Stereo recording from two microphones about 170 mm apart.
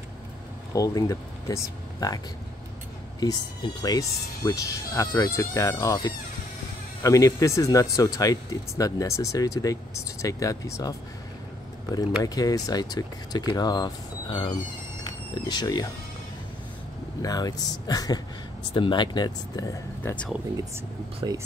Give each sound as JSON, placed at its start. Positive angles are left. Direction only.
{"t": 0.7, "sound": "speech", "side_deg": 20}
{"t": 3.2, "sound": "speech", "side_deg": 25}
{"t": 12.2, "sound": "speech", "side_deg": 20}
{"t": 17.2, "sound": "speech", "side_deg": 20}
{"t": 20.0, "sound": "speech", "side_deg": 10}